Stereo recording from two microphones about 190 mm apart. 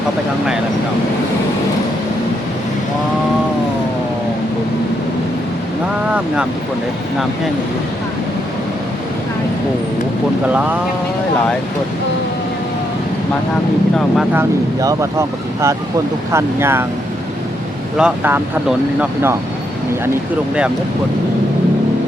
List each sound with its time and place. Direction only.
14.3 s speech: 15° right (ahead or behind)
17.9 s speech: 5° right (ahead or behind)